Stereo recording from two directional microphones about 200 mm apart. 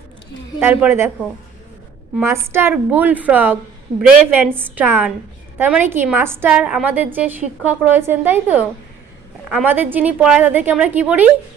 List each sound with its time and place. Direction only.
0.6 s a woman's voice: 10° right (ahead or behind)
2.1 s a woman's voice: 10° right (ahead or behind)